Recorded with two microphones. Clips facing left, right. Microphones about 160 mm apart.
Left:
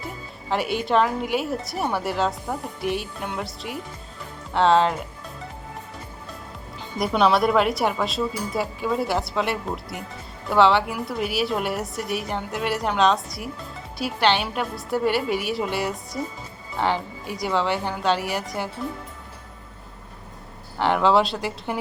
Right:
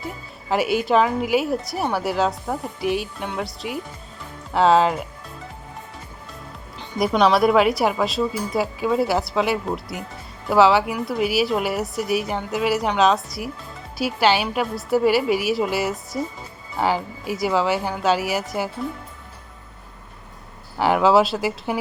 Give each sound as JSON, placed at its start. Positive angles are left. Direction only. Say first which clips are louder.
{"t": 0.5, "sound": "a woman's voice", "louder": "right 3 dB", "side_deg": -5}
{"t": 7.0, "sound": "a woman's voice", "louder": "right 3 dB", "side_deg": 0}
{"t": 20.7, "sound": "a woman's voice", "louder": "right 3 dB", "side_deg": -5}